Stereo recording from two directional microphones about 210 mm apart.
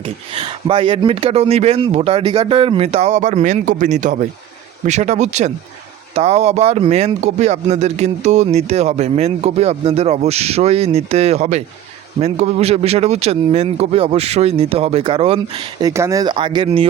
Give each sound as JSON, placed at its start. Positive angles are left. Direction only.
{"t": 0.0, "sound": "speech", "side_deg": -25}
{"t": 15.9, "sound": "speech", "side_deg": -15}